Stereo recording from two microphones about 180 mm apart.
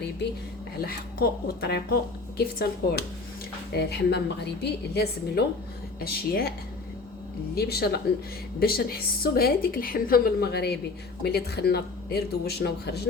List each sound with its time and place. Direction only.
0.8 s a woman's voice: 55° left (ahead or behind)
7.5 s a woman's voice: 60° left (ahead or behind)